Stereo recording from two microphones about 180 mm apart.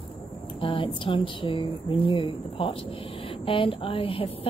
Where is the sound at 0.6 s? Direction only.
30° left (ahead or behind).